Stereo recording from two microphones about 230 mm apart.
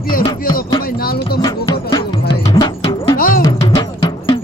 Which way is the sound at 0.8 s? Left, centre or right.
Left.